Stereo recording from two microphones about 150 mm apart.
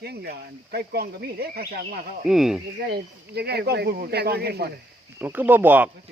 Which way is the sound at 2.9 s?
90° right.